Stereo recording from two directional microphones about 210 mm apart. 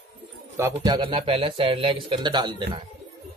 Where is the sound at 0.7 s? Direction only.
20° right (ahead or behind).